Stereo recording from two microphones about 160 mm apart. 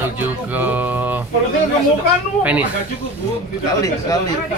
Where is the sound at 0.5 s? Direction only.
10° right (ahead or behind).